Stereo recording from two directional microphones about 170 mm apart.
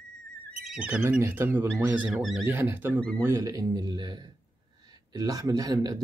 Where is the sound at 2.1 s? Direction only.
Centre (ahead or behind).